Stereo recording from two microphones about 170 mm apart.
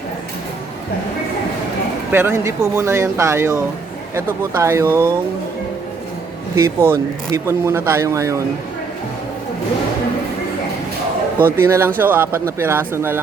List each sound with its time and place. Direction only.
2.1 s speech: 15° right (ahead or behind)
6.6 s speech: 15° right (ahead or behind)
11.3 s speech: 10° right (ahead or behind)